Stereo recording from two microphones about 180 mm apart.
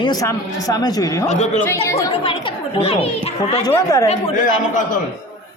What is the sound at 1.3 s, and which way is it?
Speech, 40° left (ahead or behind).